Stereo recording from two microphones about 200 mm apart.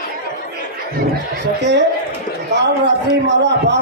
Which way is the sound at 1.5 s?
60° right (ahead or behind).